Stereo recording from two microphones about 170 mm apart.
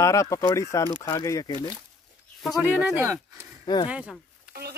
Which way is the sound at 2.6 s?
10° right (ahead or behind).